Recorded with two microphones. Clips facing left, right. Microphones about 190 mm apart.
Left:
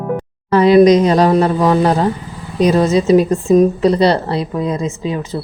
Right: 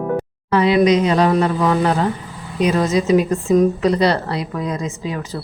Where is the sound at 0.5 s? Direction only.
40° left (ahead or behind).